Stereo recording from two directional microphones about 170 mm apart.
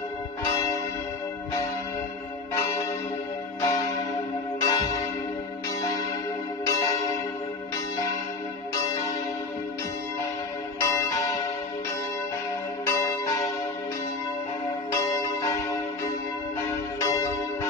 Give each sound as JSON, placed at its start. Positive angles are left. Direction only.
{"t": 2.5, "sound": "church bell", "side_deg": 15}
{"t": 6.7, "sound": "music", "side_deg": 20}
{"t": 8.7, "sound": "church bell", "side_deg": 20}
{"t": 10.8, "sound": "church bell", "side_deg": 20}
{"t": 12.9, "sound": "change ringing", "side_deg": 20}
{"t": 15.0, "sound": "church bell", "side_deg": 20}
{"t": 17.0, "sound": "church bell", "side_deg": 20}